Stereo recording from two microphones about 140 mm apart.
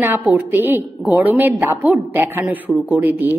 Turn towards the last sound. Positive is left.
turn(degrees=-15)  # may be behind; listen again after turning